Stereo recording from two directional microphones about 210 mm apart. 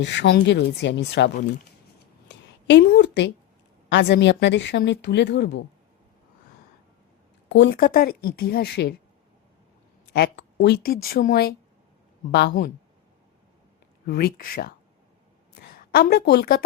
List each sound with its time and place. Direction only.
0.0 s a woman's voice: 55° left (ahead or behind)
2.2 s a sound: 55° left (ahead or behind)
3.8 s a woman's voice: 55° left (ahead or behind)
7.5 s a woman's voice: 55° left (ahead or behind)
10.1 s a woman's voice: 50° left (ahead or behind)
14.1 s a woman's voice: 45° left (ahead or behind)